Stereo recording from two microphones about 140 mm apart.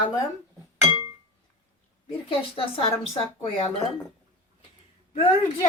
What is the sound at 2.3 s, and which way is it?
Speech, 40° left (ahead or behind).